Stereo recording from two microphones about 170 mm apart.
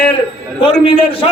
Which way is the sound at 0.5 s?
30° left (ahead or behind).